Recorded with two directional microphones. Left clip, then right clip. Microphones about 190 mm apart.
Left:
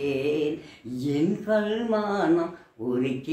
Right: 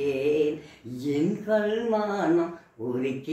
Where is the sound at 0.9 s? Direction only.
15° left (ahead or behind).